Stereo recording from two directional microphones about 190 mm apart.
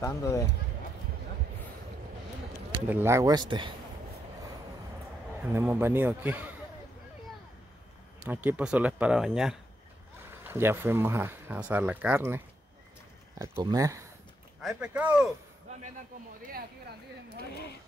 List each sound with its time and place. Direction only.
0.0 s speech: 15° left (ahead or behind)
2.9 s speech: 15° right (ahead or behind)
5.4 s speech: 10° right (ahead or behind)
8.2 s speech: 10° right (ahead or behind)
13.4 s speech: 20° right (ahead or behind)
14.6 s speech: 5° right (ahead or behind)